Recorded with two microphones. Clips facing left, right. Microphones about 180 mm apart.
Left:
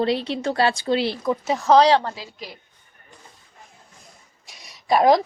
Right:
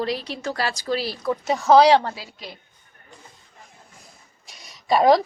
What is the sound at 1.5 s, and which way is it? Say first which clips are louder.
Speech: right 1 dB; 5° right (ahead or behind).